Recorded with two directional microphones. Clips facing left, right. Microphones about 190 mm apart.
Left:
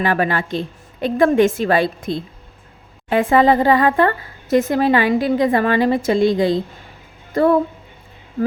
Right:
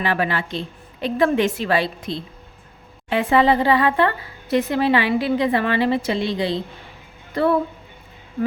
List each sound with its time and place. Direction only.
0.0 s speech: 45° left (ahead or behind)